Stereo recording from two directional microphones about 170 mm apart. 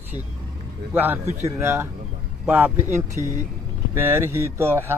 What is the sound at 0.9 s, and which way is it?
Speech, 10° right (ahead or behind).